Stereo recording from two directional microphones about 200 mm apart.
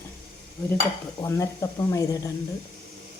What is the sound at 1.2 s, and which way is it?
Speech, 15° left (ahead or behind).